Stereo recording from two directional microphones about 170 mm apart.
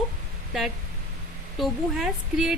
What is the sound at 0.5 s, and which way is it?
A woman's voice, centre (ahead or behind).